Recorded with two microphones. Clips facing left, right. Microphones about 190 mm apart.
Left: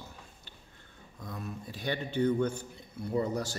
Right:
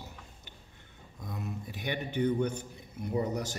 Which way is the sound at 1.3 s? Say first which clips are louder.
Right 1 dB; 15° right (ahead or behind).